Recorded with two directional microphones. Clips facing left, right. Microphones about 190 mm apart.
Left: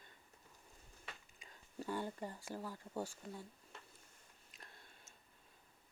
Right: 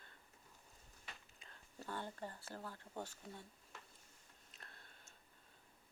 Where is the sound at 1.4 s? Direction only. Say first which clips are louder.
Left 7 dB; 10° left (ahead or behind).